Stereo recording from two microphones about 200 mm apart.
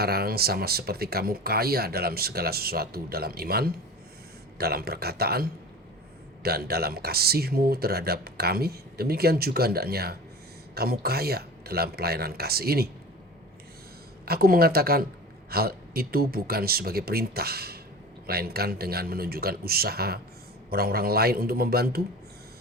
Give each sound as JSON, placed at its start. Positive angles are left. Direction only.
{"t": 0.0, "sound": "speech", "side_deg": -50}
{"t": 14.3, "sound": "speech", "side_deg": -50}